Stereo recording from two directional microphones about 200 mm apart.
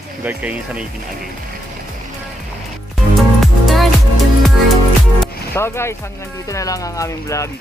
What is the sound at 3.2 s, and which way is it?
Music, centre (ahead or behind).